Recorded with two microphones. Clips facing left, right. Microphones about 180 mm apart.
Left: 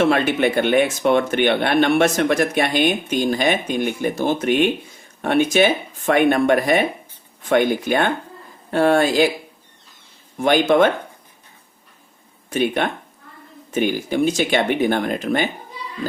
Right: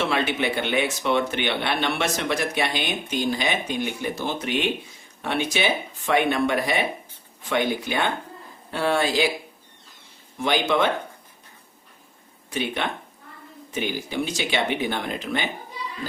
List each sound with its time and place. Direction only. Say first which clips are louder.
0.0 s speech: left 7 dB; 50° left (ahead or behind)
10.3 s speech: left 7 dB; 50° left (ahead or behind)
12.5 s speech: left 7 dB; 50° left (ahead or behind)